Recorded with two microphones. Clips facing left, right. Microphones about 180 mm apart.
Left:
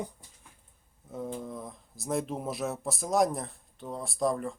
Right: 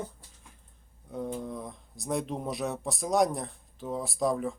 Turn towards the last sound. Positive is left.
turn(degrees=0)  # may be behind; listen again after turning